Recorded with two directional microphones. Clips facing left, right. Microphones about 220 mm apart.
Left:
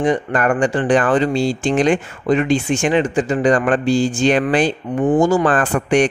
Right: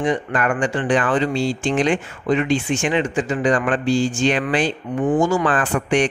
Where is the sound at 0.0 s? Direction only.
40° left (ahead or behind).